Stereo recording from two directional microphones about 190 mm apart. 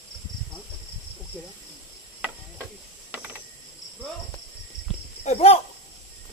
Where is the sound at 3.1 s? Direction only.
10° right (ahead or behind).